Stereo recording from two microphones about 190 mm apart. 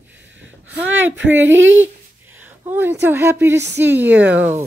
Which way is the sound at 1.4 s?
80° right.